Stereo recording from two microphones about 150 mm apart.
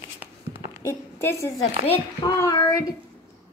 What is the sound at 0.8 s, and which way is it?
A woman's voice, 20° left (ahead or behind).